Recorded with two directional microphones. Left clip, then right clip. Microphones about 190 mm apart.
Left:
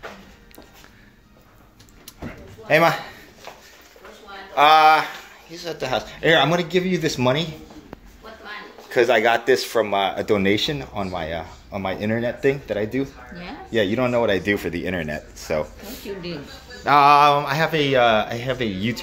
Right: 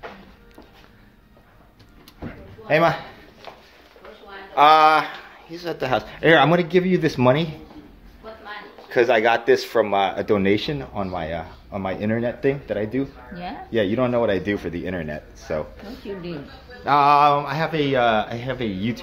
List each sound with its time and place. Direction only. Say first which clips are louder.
2.6 s a man's voice: left 1 dB; centre (ahead or behind)
4.6 s speech: even; 10° right (ahead or behind)
5.5 s speech: right 2 dB; 25° right (ahead or behind)
8.8 s speech: even; 5° right (ahead or behind)
13.3 s speech: right 3 dB; 45° right (ahead or behind)
13.7 s speech: left 1 dB; centre (ahead or behind)
16.8 s speech: left 2 dB; 5° left (ahead or behind)